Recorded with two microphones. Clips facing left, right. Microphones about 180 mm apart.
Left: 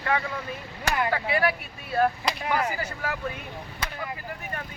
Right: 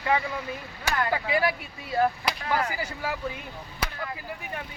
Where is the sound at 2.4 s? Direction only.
15° left (ahead or behind).